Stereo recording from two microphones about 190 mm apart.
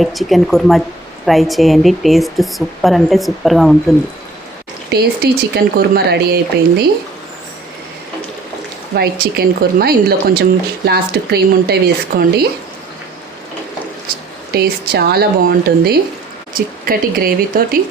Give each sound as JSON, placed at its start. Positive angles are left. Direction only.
{"t": 0.0, "sound": "speech", "side_deg": 0}
{"t": 4.9, "sound": "speech", "side_deg": -60}
{"t": 9.0, "sound": "speech", "side_deg": -55}
{"t": 14.1, "sound": "speech", "side_deg": -50}